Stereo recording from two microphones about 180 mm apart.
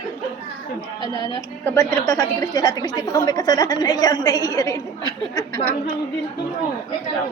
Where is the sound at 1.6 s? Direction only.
15° left (ahead or behind).